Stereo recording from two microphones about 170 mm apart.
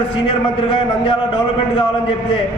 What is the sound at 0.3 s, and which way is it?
A man's voice, 30° left (ahead or behind).